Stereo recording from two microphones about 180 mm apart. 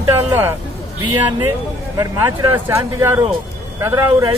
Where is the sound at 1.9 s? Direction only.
20° right (ahead or behind).